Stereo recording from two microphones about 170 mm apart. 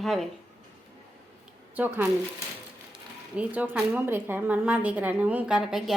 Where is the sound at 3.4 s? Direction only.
10° right (ahead or behind).